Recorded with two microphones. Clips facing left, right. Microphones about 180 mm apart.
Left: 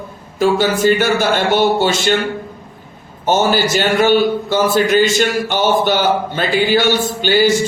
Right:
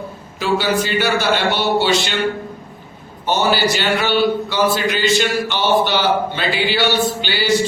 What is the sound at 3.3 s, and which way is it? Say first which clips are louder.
A man's voice: left 3 dB; 45° left (ahead or behind).